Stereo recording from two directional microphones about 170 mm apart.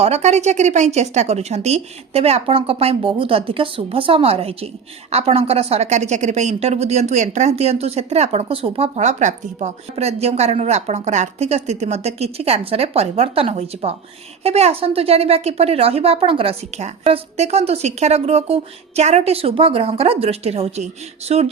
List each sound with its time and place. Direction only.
0.0 s a woman's voice: 40° right (ahead or behind)